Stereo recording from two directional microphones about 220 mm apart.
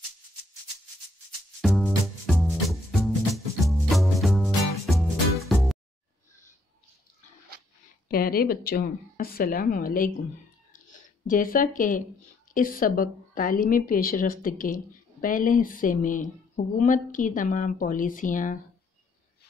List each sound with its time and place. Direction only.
1.6 s music: centre (ahead or behind)
3.9 s music: centre (ahead or behind)
8.1 s a woman's voice: 40° left (ahead or behind)